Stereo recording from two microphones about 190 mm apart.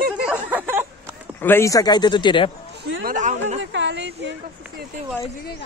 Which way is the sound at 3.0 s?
45° right (ahead or behind).